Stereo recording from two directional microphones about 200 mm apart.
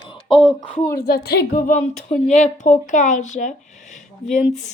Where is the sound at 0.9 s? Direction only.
50° left (ahead or behind).